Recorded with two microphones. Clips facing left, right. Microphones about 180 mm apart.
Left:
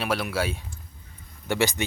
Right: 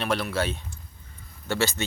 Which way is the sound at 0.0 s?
10° left (ahead or behind).